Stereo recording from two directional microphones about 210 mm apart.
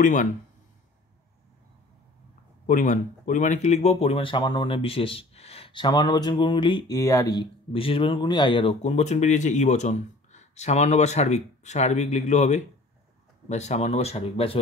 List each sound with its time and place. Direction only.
0.0 s speech: 40° left (ahead or behind)
2.6 s speech: 40° left (ahead or behind)